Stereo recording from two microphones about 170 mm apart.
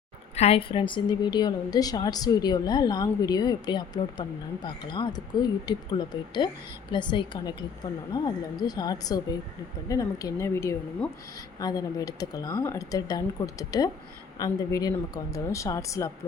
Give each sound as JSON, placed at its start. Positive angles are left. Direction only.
{"t": 0.3, "sound": "a woman's voice", "side_deg": 35}